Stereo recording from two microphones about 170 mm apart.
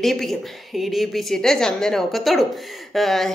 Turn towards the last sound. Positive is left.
turn(degrees=0)  # may be behind; listen again after turning